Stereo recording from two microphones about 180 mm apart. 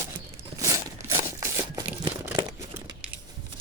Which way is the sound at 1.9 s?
10° right (ahead or behind).